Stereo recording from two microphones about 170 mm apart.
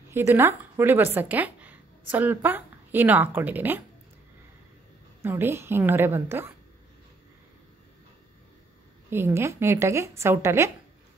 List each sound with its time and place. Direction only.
0.1 s speech: 15° right (ahead or behind)
5.2 s speech: 15° right (ahead or behind)
9.1 s speech: 15° right (ahead or behind)